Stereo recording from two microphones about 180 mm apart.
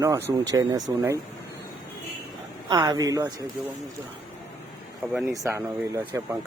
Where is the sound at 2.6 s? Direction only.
20° right (ahead or behind).